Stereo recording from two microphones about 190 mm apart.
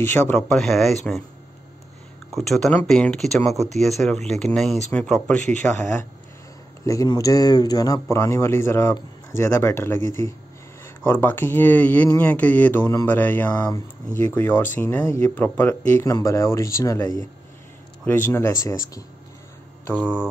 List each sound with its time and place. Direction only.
0.0 s speech: 15° left (ahead or behind)
0.4 s speech: centre (ahead or behind)
2.3 s speech: centre (ahead or behind)
6.8 s speech: 15° left (ahead or behind)